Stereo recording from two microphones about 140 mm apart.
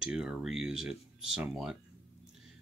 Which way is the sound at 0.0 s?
5° right (ahead or behind).